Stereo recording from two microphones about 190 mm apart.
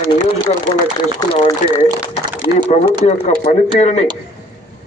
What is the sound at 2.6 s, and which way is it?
A man's voice, 35° left (ahead or behind).